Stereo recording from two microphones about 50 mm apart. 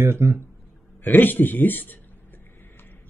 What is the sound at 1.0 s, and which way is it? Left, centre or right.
Speech, left.